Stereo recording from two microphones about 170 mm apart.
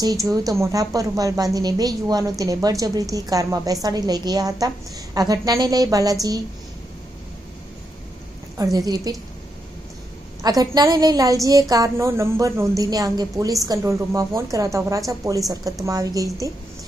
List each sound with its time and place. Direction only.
0.0 s a woman's voice: 20° right (ahead or behind)
8.5 s a woman's voice: 20° right (ahead or behind)
10.4 s a woman's voice: 20° right (ahead or behind)